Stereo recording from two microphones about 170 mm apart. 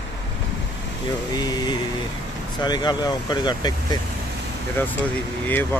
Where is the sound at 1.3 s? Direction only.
25° left (ahead or behind).